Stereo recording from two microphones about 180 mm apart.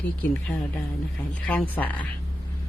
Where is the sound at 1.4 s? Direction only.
10° left (ahead or behind).